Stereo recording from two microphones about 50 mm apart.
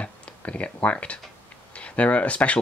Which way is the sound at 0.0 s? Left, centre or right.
Left.